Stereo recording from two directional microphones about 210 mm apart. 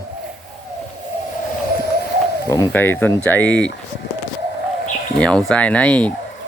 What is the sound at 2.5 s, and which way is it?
Speech, 15° left (ahead or behind).